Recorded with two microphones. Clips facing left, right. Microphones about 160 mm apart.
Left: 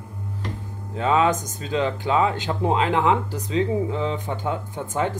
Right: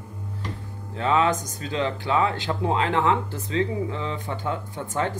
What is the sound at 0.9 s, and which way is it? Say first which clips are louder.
Speech: left 2 dB; 15° left (ahead or behind).